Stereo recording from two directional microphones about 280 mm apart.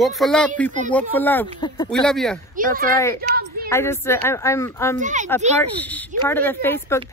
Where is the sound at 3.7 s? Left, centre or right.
Centre.